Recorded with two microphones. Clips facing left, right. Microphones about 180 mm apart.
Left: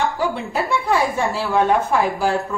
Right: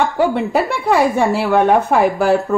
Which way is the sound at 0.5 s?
65° right (ahead or behind).